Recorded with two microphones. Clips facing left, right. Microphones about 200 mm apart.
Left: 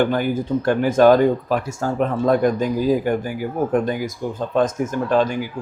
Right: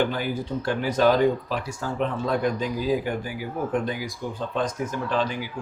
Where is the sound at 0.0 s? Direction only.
50° left (ahead or behind).